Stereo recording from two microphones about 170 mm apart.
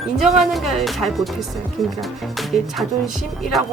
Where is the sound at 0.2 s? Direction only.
Centre (ahead or behind).